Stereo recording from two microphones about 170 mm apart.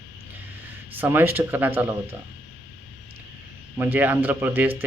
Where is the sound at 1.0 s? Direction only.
10° right (ahead or behind).